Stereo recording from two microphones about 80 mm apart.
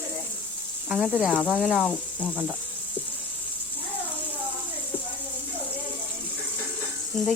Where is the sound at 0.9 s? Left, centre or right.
Centre.